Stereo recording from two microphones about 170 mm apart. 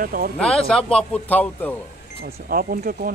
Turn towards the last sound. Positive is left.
turn(degrees=-60)  # may be behind; listen again after turning